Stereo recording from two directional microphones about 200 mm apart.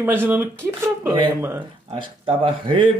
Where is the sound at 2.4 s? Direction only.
25° right (ahead or behind).